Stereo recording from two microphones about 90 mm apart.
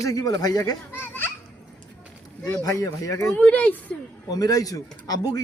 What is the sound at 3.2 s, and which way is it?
Speech, 10° left (ahead or behind).